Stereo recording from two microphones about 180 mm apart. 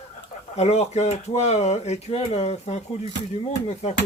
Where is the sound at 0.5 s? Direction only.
40° left (ahead or behind).